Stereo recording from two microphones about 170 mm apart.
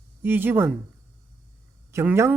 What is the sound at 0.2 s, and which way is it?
Speech, 10° right (ahead or behind).